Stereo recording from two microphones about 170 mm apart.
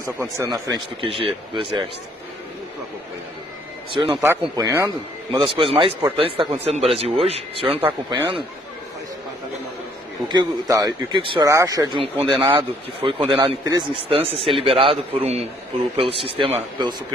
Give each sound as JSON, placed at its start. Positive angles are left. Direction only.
{"t": 0.0, "sound": "speech", "side_deg": -15}
{"t": 3.9, "sound": "a man's voice", "side_deg": -30}
{"t": 4.2, "sound": "a man's voice", "side_deg": -15}
{"t": 10.2, "sound": "speech", "side_deg": -25}
{"t": 12.0, "sound": "a man's voice", "side_deg": -30}